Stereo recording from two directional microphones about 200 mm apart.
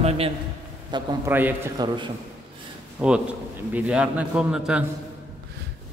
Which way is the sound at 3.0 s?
5° right (ahead or behind).